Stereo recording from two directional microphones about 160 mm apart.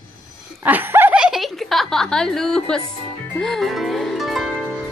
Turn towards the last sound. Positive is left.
turn(degrees=0)  # may be behind; listen again after turning